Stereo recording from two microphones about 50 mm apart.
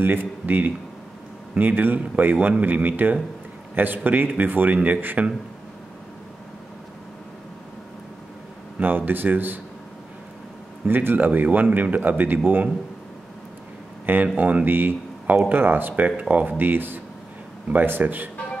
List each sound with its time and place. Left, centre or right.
0.0 s a man's voice: right
8.7 s a man's voice: right
10.9 s a man's voice: right
14.0 s a man's voice: right